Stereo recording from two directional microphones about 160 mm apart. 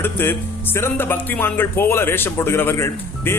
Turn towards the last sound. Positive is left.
turn(degrees=15)  # may be behind; listen again after turning